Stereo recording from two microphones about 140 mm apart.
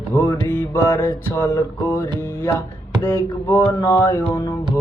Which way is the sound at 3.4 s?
25° left (ahead or behind).